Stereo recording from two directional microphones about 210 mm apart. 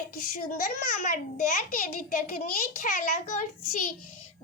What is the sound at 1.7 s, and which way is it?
A child's voice, 40° left (ahead or behind).